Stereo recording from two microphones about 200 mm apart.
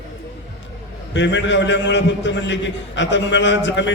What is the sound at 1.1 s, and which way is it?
A man's voice, 65° left (ahead or behind).